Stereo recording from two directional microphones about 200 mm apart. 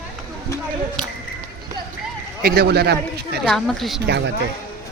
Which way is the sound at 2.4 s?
50° right (ahead or behind).